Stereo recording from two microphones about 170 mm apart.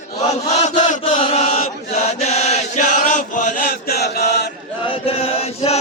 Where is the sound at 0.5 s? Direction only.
40° left (ahead or behind); by 4.4 s 75° left (ahead or behind).